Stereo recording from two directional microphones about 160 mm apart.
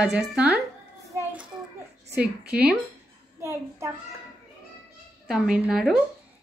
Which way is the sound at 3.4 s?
15° right (ahead or behind).